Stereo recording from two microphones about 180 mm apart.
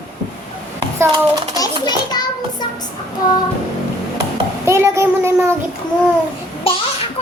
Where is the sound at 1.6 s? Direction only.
20° left (ahead or behind).